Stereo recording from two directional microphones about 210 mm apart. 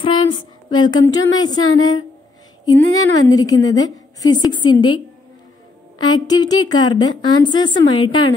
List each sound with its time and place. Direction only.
0.0 s a sound: 25° left (ahead or behind)
0.7 s a woman's voice: 20° left (ahead or behind)
5.9 s a woman's voice: 20° left (ahead or behind)